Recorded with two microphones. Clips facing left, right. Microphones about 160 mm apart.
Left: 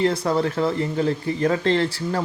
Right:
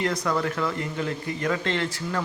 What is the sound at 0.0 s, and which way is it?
Speech, 30° left (ahead or behind).